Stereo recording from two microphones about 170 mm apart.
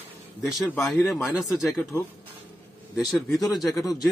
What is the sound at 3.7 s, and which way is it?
Speech, 20° left (ahead or behind).